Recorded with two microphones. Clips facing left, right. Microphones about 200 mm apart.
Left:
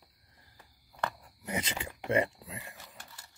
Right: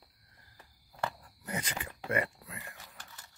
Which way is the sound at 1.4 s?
20° left (ahead or behind).